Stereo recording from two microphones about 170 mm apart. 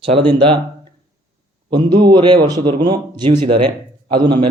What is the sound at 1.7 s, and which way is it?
Speech, 25° right (ahead or behind).